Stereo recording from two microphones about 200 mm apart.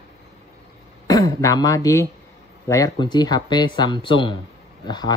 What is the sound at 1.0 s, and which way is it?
Speech, 15° left (ahead or behind).